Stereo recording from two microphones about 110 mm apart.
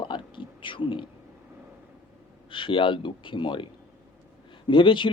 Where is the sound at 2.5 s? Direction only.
50° left (ahead or behind).